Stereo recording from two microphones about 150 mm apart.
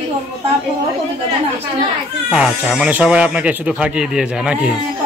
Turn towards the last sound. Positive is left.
turn(degrees=-5)  # may be behind; listen again after turning